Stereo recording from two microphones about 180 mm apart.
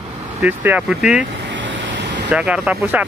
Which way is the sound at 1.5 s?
90° right.